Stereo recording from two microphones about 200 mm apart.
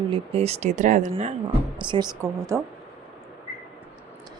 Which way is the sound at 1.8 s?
20° right (ahead or behind).